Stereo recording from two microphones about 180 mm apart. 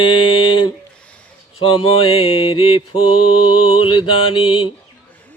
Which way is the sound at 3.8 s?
30° left (ahead or behind).